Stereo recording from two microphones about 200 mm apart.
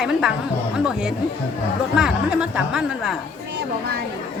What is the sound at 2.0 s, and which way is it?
Speech, 5° right (ahead or behind).